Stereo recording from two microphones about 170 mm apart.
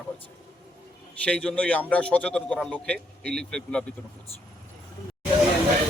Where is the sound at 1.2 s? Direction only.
5° left (ahead or behind).